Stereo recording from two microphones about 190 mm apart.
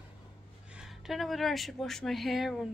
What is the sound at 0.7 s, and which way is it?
Speech, centre (ahead or behind).